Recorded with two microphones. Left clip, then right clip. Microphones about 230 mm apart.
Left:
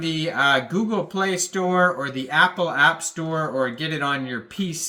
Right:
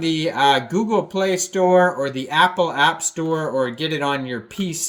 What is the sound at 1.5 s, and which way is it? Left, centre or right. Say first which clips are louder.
Speech: right 6 dB; centre.